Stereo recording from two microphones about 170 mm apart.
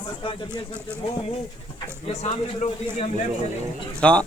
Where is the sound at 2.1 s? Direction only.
40° left (ahead or behind).